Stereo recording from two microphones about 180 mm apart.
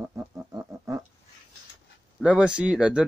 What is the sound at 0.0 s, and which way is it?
Music, 15° right (ahead or behind).